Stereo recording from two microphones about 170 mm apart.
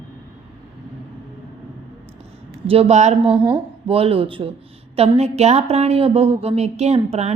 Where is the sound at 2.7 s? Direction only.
40° right (ahead or behind).